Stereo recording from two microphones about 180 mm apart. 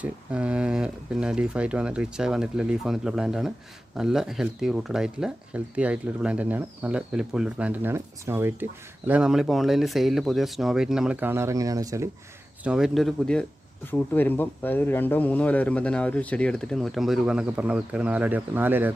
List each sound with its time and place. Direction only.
0.0 s speech: 5° right (ahead or behind)
12.6 s speech: 5° right (ahead or behind)